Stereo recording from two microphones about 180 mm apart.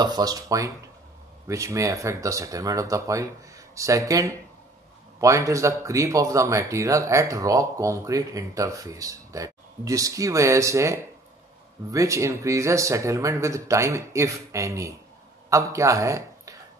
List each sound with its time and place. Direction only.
0.0 s speech: 20° right (ahead or behind)